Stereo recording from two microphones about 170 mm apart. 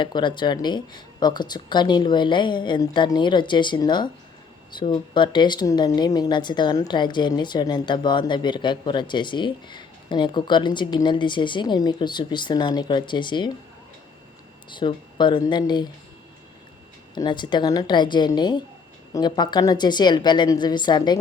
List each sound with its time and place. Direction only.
0.0 s speech: 25° left (ahead or behind)
14.7 s speech: 25° left (ahead or behind)
17.2 s speech: 25° left (ahead or behind)